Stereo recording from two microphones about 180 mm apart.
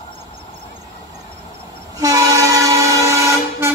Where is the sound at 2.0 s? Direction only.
20° right (ahead or behind).